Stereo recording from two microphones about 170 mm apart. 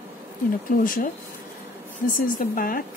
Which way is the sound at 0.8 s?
55° left (ahead or behind).